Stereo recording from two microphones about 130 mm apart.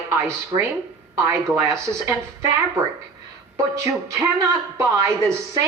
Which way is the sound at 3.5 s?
25° right (ahead or behind).